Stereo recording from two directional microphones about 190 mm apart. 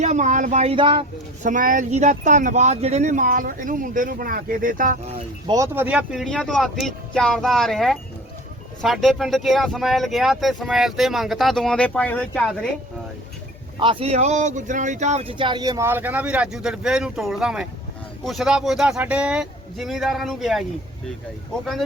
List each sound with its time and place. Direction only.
0.0 s speech: 40° right (ahead or behind)
1.5 s speech: 45° right (ahead or behind)
5.5 s speech: 15° right (ahead or behind); by 12.5 s 5° left (ahead or behind)
13.7 s speech: 25° right (ahead or behind); by 20.7 s centre (ahead or behind)